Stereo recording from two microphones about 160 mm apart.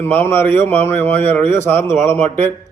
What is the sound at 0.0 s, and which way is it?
A man's voice, 15° left (ahead or behind).